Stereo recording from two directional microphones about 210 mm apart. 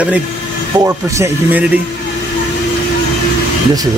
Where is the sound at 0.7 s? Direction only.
15° right (ahead or behind).